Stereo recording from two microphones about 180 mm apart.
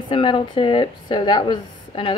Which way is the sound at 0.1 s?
30° left (ahead or behind).